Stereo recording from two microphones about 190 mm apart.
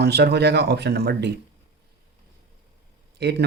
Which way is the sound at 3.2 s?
60° right (ahead or behind).